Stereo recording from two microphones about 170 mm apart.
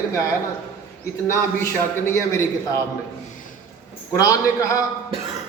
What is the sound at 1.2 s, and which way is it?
A man's voice, 15° left (ahead or behind).